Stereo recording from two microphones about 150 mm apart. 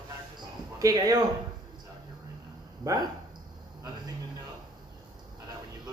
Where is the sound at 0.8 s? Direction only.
25° right (ahead or behind).